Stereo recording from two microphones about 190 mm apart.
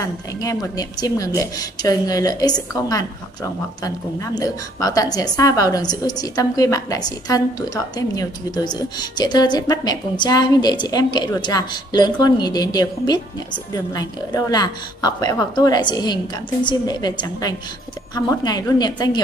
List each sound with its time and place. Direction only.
0.0 s a woman's voice: 15° left (ahead or behind)
4.4 s a woman's voice: 20° left (ahead or behind)